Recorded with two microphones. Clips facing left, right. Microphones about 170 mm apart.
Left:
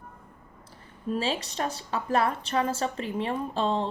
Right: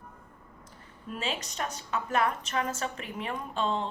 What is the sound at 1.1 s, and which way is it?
A woman's voice, 30° left (ahead or behind).